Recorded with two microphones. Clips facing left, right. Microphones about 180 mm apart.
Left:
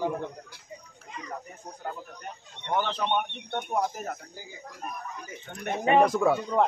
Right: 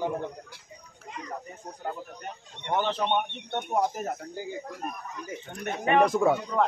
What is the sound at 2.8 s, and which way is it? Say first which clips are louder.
Speech: right 1 dB; 20° right (ahead or behind).